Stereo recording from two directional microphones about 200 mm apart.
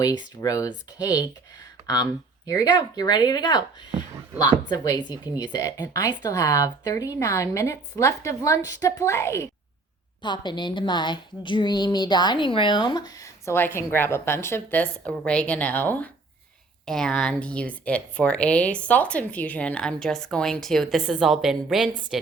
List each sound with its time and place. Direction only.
0.0 s speech: 20° left (ahead or behind)
2.5 s a woman's voice: 20° left (ahead or behind); by 22.2 s centre (ahead or behind)